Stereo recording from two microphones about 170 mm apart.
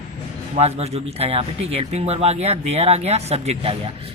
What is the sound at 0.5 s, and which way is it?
Speech, 40° right (ahead or behind).